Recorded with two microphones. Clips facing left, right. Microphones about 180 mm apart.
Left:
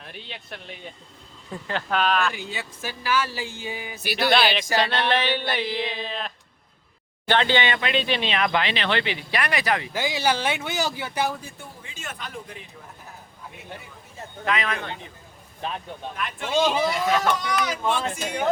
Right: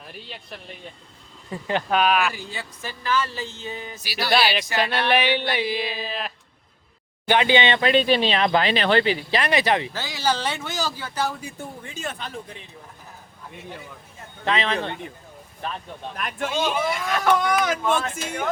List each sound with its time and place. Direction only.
0.0 s speech: centre (ahead or behind)
1.6 s speech: 15° right (ahead or behind)
2.5 s speech: 5° left (ahead or behind)
3.9 s speech: 55° left (ahead or behind)
4.2 s speech: centre (ahead or behind); by 7.8 s 20° right (ahead or behind)
7.8 s speech: 40° right (ahead or behind)
9.3 s speech: 25° right (ahead or behind)
9.9 s speech: 15° left (ahead or behind)
11.9 s speech: 35° right (ahead or behind)
14.4 s speech: 30° right (ahead or behind)
16.1 s speech: 45° right (ahead or behind)
16.9 s speech: 55° right (ahead or behind)